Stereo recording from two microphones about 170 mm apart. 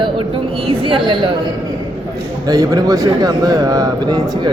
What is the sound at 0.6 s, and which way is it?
Speech, 35° right (ahead or behind).